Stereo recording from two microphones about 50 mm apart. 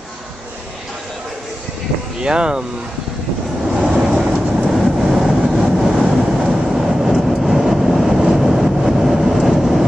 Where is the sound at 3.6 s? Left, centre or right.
Centre.